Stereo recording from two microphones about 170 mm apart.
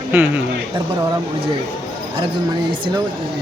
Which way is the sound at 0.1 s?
10° right (ahead or behind).